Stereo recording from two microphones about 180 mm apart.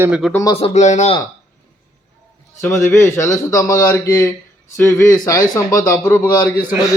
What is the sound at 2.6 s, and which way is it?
A man's voice, 10° left (ahead or behind).